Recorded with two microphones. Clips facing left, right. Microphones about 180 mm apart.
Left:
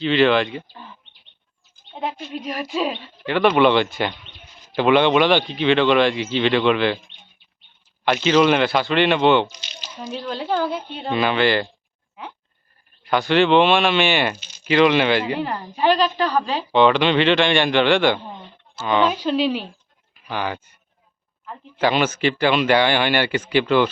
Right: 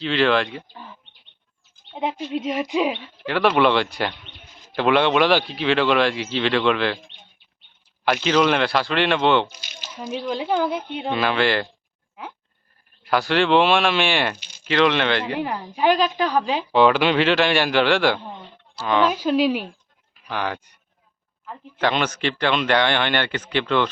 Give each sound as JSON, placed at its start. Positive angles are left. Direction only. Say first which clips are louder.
{"t": 0.0, "sound": "a woman's voice", "louder": "left 3 dB", "side_deg": 0}
{"t": 2.0, "sound": "speech", "louder": "right 3 dB", "side_deg": -20}
{"t": 3.2, "sound": "a woman's voice", "louder": "left 2 dB", "side_deg": 0}
{"t": 8.0, "sound": "a woman's voice", "louder": "left 2 dB", "side_deg": 0}
{"t": 9.9, "sound": "speech", "louder": "right 2 dB", "side_deg": -10}
{"t": 11.1, "sound": "a woman's voice", "louder": "left 2 dB", "side_deg": 0}
{"t": 13.0, "sound": "a woman's voice", "louder": "left 2 dB", "side_deg": 0}
{"t": 15.5, "sound": "a woman's voice", "louder": "even", "side_deg": -10}
{"t": 20.2, "sound": "a woman's voice", "louder": "left 1 dB", "side_deg": 0}
{"t": 21.8, "sound": "speech", "louder": "left 3 dB", "side_deg": 5}